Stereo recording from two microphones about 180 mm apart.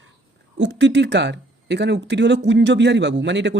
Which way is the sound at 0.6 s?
90° right.